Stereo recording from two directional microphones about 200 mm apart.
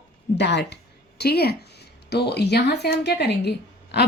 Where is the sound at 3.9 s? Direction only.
55° left (ahead or behind).